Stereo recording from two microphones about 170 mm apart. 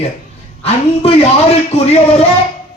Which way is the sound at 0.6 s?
35° left (ahead or behind).